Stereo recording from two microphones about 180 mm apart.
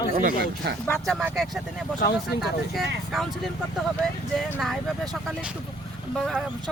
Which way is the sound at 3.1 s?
Centre (ahead or behind).